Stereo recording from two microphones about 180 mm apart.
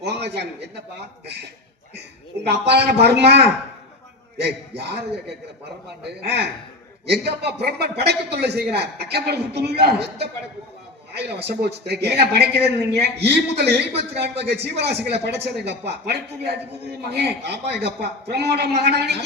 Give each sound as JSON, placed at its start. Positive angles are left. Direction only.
{"t": 0.0, "sound": "a woman's voice", "side_deg": -65}
{"t": 2.5, "sound": "a man's voice", "side_deg": -65}
{"t": 6.2, "sound": "a woman's voice", "side_deg": -70}